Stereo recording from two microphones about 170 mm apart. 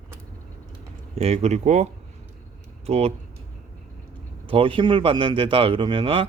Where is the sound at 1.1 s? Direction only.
40° right (ahead or behind).